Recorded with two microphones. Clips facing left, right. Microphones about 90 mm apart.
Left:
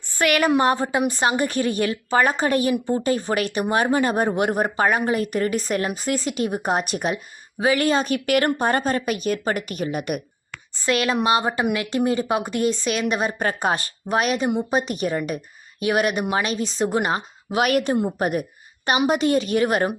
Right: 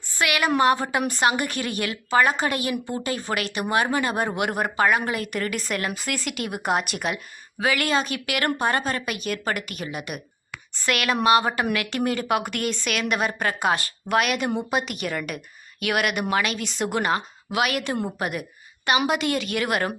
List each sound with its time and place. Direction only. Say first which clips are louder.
0.1 s a woman's voice: left 4 dB; 40° left (ahead or behind)
0.6 s speech: left 1 dB; 30° left (ahead or behind)
2.7 s speech: left 6 dB; 25° left (ahead or behind)
3.0 s speech: left 5 dB; 35° left (ahead or behind)
10.8 s speech: left 1 dB; 30° left (ahead or behind)
17.6 s a woman's voice: left 5 dB; 45° left (ahead or behind)